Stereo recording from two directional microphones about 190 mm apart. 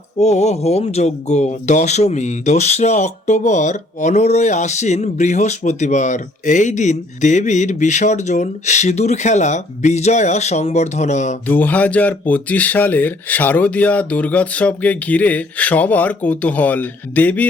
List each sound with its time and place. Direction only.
0.2 s speech: 35° left (ahead or behind)
11.4 s speech: 10° left (ahead or behind)